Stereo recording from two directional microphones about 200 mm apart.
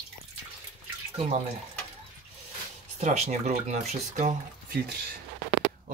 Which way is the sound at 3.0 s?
35° right (ahead or behind).